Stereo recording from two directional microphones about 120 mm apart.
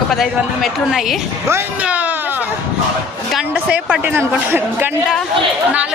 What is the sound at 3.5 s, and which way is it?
Speech, 10° right (ahead or behind).